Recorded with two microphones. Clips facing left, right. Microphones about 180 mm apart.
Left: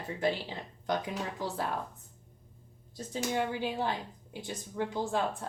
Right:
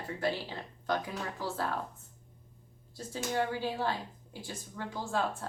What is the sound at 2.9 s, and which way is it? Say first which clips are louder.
Speech: left 1 dB; 20° left (ahead or behind).